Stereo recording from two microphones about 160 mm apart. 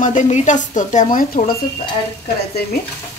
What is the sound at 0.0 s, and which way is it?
A woman's voice, 50° left (ahead or behind).